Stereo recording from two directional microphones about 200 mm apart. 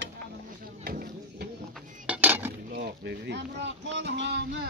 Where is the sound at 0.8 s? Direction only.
45° right (ahead or behind).